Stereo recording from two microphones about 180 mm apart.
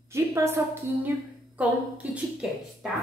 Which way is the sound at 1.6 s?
5° right (ahead or behind).